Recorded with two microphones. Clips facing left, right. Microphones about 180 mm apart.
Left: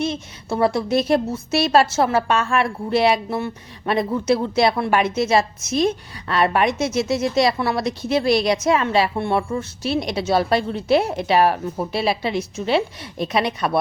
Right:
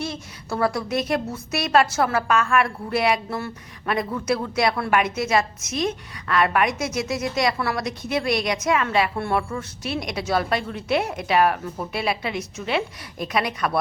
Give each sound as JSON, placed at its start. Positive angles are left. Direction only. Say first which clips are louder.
{"t": 0.0, "sound": "a woman's voice", "louder": "left 6 dB", "side_deg": 20}